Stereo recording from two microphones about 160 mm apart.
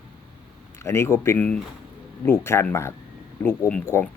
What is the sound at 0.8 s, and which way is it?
Speech, 15° left (ahead or behind).